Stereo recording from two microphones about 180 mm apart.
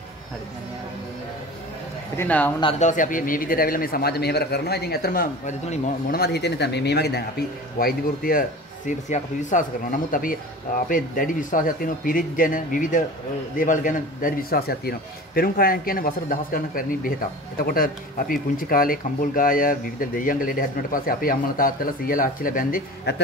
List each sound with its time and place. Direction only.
2.1 s speech: 10° left (ahead or behind)
2.8 s speech: 45° left (ahead or behind)